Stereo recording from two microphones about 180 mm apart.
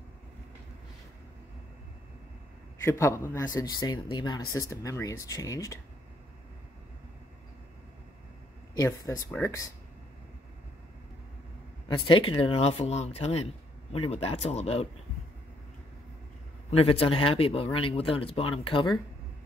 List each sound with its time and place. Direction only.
2.8 s speech: 15° left (ahead or behind)
8.7 s speech: 15° left (ahead or behind)
12.1 s speech: 30° left (ahead or behind)
16.7 s speech: 30° left (ahead or behind)